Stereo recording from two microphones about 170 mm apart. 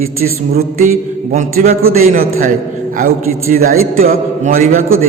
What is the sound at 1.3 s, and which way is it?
A man's voice, 45° right (ahead or behind).